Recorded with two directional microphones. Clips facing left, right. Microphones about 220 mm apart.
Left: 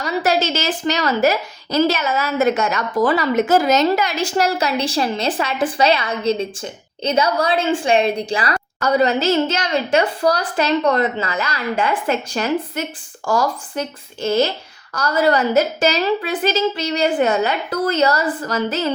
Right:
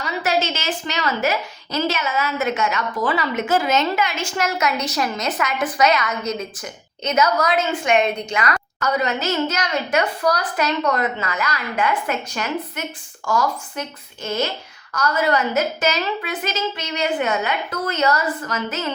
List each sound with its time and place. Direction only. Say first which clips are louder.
0.2 s a woman's voice: left 3 dB; 35° left (ahead or behind)